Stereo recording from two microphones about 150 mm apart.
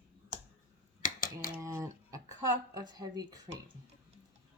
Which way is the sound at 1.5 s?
20° right (ahead or behind).